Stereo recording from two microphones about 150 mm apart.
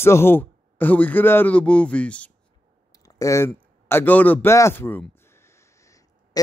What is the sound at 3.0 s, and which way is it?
A man's voice, 20° left (ahead or behind).